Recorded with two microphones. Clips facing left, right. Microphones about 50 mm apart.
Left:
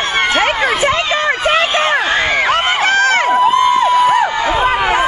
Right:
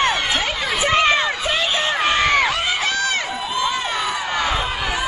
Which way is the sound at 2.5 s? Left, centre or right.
Left.